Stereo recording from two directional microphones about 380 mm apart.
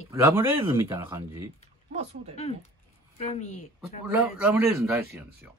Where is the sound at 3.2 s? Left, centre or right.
Centre.